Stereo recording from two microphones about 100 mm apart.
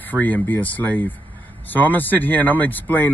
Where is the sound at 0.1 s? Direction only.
15° left (ahead or behind).